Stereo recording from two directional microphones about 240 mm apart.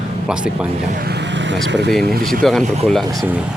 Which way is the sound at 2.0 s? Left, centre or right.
Right.